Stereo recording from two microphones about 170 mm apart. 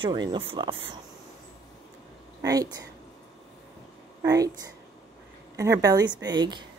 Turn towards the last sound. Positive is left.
turn(degrees=-25)  # may be behind; listen again after turning